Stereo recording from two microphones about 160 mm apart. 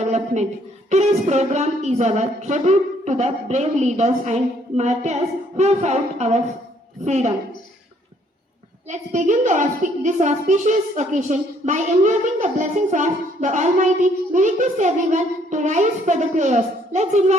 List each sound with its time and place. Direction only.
0.0 s a sound: 45° right (ahead or behind)
0.9 s a woman's voice: 45° right (ahead or behind)
8.9 s a woman's voice: 50° right (ahead or behind)